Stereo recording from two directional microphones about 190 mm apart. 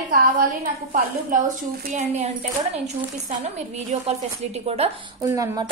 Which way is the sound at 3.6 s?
35° right (ahead or behind).